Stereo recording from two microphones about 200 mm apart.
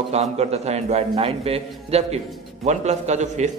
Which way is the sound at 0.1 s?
30° right (ahead or behind).